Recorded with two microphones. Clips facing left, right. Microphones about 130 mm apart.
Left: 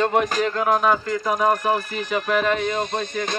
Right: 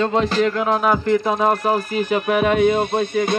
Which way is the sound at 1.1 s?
25° right (ahead or behind).